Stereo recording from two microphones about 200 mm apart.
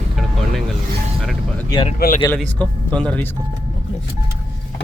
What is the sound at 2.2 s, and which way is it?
Speech, 10° left (ahead or behind).